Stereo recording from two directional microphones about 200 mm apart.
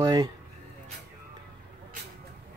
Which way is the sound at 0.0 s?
20° right (ahead or behind).